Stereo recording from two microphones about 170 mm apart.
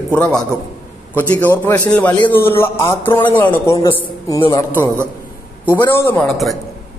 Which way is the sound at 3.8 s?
30° left (ahead or behind).